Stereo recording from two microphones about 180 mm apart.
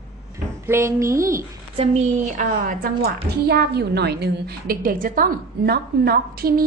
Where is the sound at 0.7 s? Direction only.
15° right (ahead or behind).